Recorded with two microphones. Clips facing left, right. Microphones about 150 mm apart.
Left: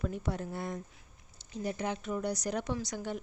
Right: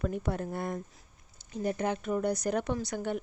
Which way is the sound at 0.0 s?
55° right (ahead or behind).